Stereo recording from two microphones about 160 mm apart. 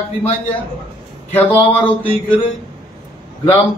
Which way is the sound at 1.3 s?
10° left (ahead or behind).